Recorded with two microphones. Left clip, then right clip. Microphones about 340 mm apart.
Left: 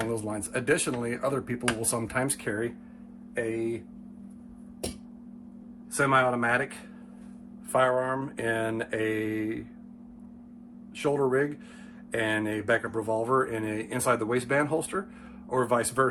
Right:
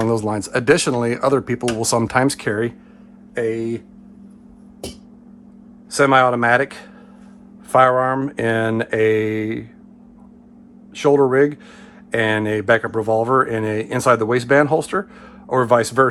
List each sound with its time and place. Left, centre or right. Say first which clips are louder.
0.1 s speech: right 12 dB; centre
6.0 s speech: right 10 dB; centre
7.7 s speech: right 11 dB; right
10.9 s speech: right 11 dB; centre